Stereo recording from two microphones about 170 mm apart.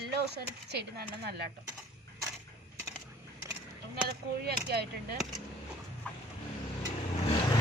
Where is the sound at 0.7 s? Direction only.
70° right (ahead or behind).